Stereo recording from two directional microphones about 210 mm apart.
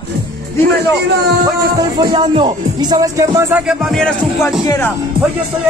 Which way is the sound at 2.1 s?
20° right (ahead or behind).